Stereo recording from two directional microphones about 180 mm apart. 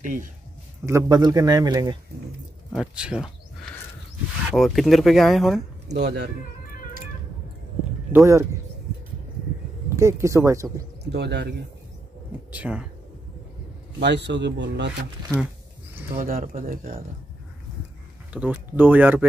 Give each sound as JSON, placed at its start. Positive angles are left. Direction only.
{"t": 0.0, "sound": "speech", "side_deg": -45}
{"t": 0.8, "sound": "speech", "side_deg": -20}
{"t": 2.7, "sound": "speech", "side_deg": -5}
{"t": 4.5, "sound": "speech", "side_deg": 0}
{"t": 5.9, "sound": "speech", "side_deg": -70}
{"t": 8.1, "sound": "speech", "side_deg": -15}
{"t": 9.9, "sound": "speech", "side_deg": -15}
{"t": 11.1, "sound": "speech", "side_deg": -70}
{"t": 12.4, "sound": "speech", "side_deg": -5}
{"t": 13.9, "sound": "speech", "side_deg": -70}
{"t": 16.2, "sound": "speech", "side_deg": -50}
{"t": 18.3, "sound": "speech", "side_deg": -10}